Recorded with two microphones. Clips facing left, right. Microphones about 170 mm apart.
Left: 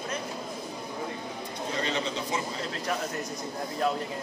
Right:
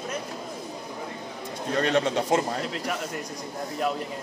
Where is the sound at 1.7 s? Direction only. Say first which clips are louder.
Right 8 dB; 70° right (ahead or behind).